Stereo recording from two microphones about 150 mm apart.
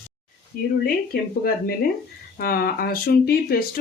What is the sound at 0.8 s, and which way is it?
Speech, 75° left (ahead or behind).